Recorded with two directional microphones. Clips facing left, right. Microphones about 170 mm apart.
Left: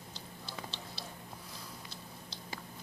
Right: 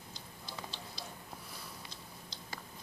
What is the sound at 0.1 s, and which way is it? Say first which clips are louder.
Tick-tock: left 2 dB; 65° left (ahead or behind).